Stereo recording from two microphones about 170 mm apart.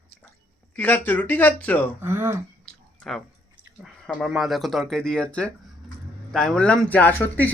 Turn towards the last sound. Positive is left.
turn(degrees=10)  # may be behind; listen again after turning